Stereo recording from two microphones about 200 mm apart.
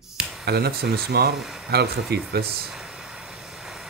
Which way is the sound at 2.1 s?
55° right (ahead or behind).